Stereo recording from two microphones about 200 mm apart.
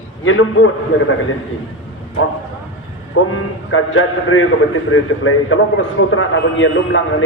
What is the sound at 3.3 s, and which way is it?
A man's voice, 90° left.